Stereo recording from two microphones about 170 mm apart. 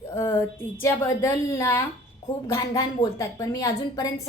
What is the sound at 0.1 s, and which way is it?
A woman's voice, 15° left (ahead or behind).